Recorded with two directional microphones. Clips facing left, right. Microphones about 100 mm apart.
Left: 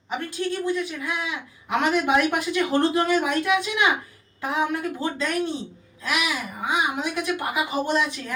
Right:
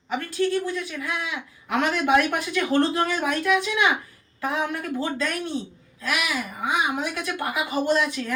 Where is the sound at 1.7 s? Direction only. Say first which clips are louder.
Even; 15° left (ahead or behind).